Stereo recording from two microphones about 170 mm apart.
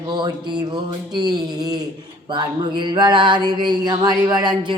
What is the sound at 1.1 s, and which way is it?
Speech, 25° right (ahead or behind).